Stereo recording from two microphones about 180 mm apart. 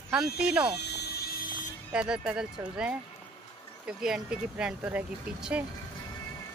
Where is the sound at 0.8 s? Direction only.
65° left (ahead or behind).